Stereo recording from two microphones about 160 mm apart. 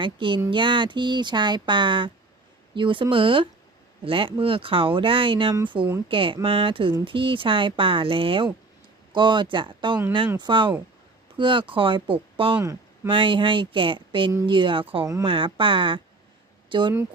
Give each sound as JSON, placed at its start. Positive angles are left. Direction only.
{"t": 0.0, "sound": "speech", "side_deg": -30}